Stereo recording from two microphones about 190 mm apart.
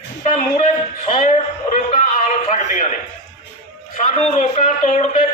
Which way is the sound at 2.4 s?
40° left (ahead or behind).